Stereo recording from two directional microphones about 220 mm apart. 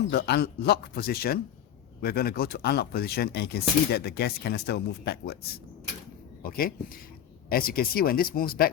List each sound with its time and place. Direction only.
0.1 s speech: 45° left (ahead or behind)